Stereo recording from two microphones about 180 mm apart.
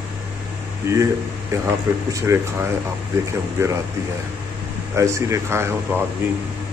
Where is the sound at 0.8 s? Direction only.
15° right (ahead or behind).